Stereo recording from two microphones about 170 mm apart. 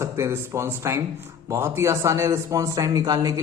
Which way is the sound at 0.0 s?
15° right (ahead or behind).